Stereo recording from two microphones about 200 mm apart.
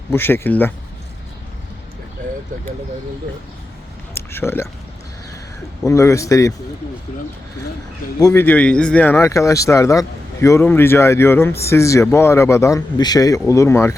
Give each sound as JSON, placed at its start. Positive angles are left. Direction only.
{"t": 0.1, "sound": "speech", "side_deg": 10}
{"t": 2.2, "sound": "a sound", "side_deg": -40}
{"t": 4.1, "sound": "speech", "side_deg": 10}
{"t": 5.8, "sound": "speech", "side_deg": 15}
{"t": 8.2, "sound": "speech", "side_deg": 15}